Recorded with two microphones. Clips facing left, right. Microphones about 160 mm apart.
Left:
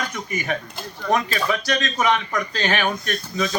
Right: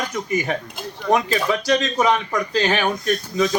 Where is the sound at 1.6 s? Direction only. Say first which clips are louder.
Right 4 dB; 35° right (ahead or behind).